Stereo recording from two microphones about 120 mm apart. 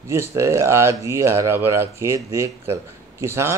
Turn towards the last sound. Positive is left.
turn(degrees=-20)  # may be behind; listen again after turning